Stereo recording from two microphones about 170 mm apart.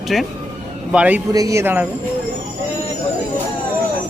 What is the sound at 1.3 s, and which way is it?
Speech, 20° right (ahead or behind).